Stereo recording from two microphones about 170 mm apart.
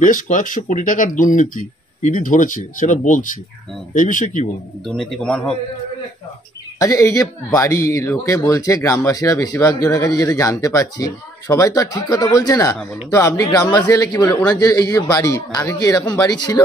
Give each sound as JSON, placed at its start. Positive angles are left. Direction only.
{"t": 0.0, "sound": "speech", "side_deg": 50}
{"t": 4.8, "sound": "a man's voice", "side_deg": 5}
{"t": 6.8, "sound": "speech", "side_deg": 20}